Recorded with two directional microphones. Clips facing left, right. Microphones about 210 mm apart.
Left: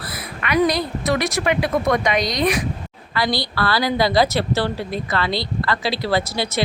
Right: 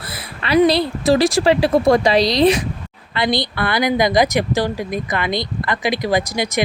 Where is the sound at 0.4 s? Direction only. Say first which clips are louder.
Right 5 dB; 30° right (ahead or behind).